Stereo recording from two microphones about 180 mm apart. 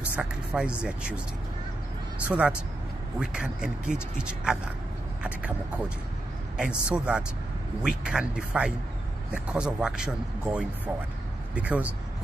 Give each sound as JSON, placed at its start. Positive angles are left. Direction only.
{"t": 0.0, "sound": "music", "side_deg": -10}
{"t": 2.2, "sound": "speech", "side_deg": -5}
{"t": 6.5, "sound": "speech", "side_deg": -5}